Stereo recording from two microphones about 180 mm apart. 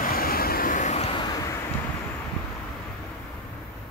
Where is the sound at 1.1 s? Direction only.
20° left (ahead or behind).